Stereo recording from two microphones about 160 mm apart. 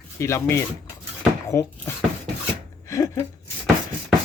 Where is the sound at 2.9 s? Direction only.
20° left (ahead or behind).